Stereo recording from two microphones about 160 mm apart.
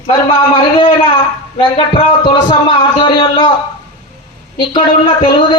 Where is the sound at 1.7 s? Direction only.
35° left (ahead or behind).